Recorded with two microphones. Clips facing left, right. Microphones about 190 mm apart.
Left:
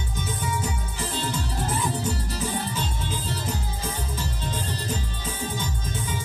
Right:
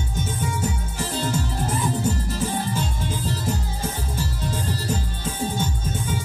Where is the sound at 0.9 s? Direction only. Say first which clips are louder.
Right 4 dB; 45° right (ahead or behind).